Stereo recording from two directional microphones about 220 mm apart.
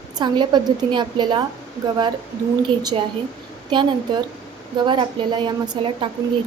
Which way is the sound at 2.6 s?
20° right (ahead or behind).